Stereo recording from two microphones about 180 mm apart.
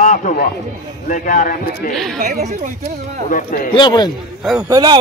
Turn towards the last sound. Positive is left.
turn(degrees=-20)  # may be behind; listen again after turning